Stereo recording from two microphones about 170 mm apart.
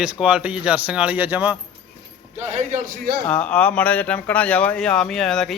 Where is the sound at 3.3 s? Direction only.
5° left (ahead or behind).